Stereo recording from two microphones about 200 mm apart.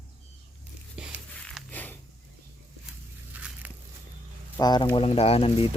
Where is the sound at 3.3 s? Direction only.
10° right (ahead or behind).